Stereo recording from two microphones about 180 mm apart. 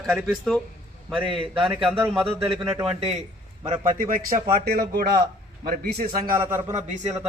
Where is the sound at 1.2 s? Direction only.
30° right (ahead or behind).